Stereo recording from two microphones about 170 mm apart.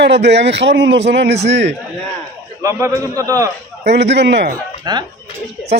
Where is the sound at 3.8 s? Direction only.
90° right.